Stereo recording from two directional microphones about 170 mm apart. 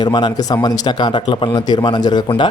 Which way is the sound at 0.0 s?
25° left (ahead or behind).